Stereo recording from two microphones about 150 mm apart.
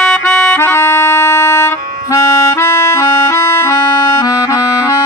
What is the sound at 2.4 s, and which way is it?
Accordion, 15° left (ahead or behind).